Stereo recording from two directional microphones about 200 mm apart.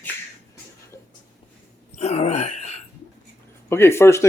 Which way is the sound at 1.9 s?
30° left (ahead or behind).